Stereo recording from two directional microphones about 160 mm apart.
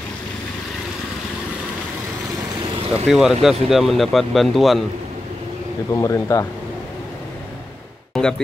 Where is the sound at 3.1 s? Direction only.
Centre (ahead or behind).